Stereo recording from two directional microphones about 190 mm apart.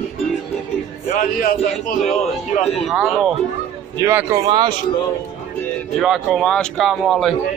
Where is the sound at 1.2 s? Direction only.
45° left (ahead or behind).